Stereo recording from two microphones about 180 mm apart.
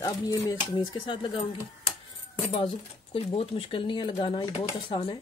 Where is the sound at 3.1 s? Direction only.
30° left (ahead or behind).